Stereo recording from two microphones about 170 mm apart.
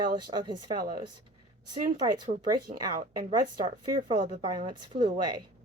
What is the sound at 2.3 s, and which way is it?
Speech, 50° right (ahead or behind).